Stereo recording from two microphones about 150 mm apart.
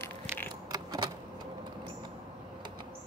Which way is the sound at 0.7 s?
25° right (ahead or behind).